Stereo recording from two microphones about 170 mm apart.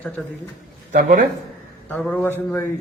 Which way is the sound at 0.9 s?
55° right (ahead or behind).